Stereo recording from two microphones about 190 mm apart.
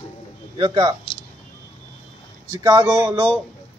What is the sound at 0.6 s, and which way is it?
Speech, 25° right (ahead or behind).